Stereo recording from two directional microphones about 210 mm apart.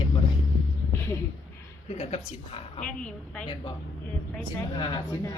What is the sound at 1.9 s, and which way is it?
Speech, 30° left (ahead or behind).